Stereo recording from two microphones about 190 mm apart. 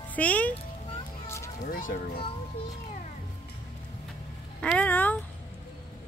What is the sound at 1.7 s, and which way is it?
Speech, 45° left (ahead or behind).